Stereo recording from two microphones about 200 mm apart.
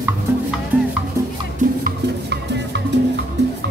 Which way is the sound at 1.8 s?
60° right (ahead or behind).